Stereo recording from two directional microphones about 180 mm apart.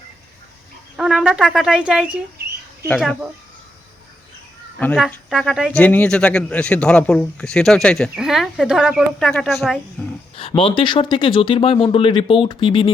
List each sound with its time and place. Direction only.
0.9 s a man's voice: centre (ahead or behind)
4.8 s a man's voice: 5° left (ahead or behind)
10.3 s speech: 30° left (ahead or behind)